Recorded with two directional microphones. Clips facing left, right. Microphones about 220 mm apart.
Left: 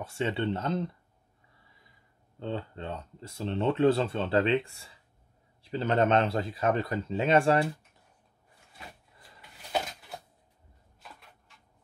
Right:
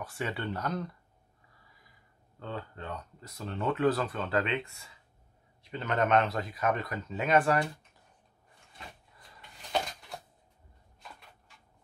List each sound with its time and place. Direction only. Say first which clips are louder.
0.0 s speech: left 5 dB; 25° left (ahead or behind)
2.3 s speech: left 5 dB; 25° left (ahead or behind)
9.6 s a sound: even; 5° left (ahead or behind)